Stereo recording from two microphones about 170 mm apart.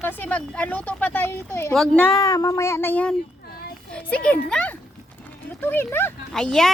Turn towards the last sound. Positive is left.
turn(degrees=5)  # may be behind; listen again after turning